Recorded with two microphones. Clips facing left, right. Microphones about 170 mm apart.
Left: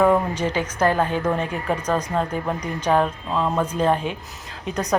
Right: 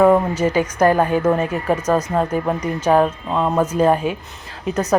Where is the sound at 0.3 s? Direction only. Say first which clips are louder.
Right 6 dB; 10° right (ahead or behind).